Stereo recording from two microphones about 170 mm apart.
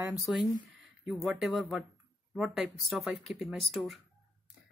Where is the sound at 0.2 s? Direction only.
Centre (ahead or behind).